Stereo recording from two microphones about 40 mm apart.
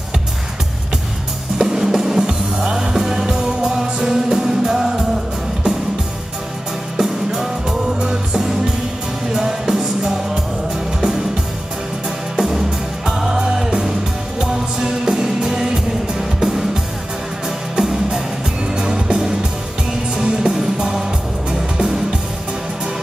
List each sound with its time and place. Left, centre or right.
1.6 s music: centre
7.0 s music: centre
12.4 s music: centre
17.7 s music: centre